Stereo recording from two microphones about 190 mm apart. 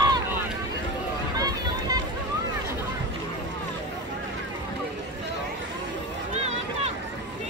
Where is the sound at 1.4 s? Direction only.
20° right (ahead or behind).